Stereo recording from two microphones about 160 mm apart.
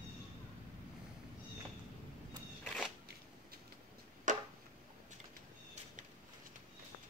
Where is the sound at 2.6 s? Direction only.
Centre (ahead or behind).